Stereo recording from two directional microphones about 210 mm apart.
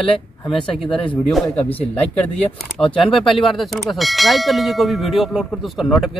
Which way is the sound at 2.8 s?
10° left (ahead or behind).